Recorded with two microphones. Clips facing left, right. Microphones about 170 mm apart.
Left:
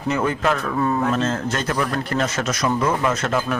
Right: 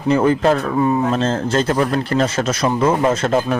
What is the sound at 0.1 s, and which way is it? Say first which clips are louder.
Speech: right 7 dB; 35° right (ahead or behind).